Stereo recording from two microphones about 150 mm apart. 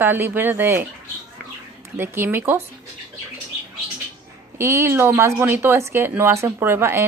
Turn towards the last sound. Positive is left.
turn(degrees=-15)  # may be behind; listen again after turning